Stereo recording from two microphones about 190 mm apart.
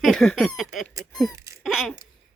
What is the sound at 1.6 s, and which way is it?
Speech, centre (ahead or behind).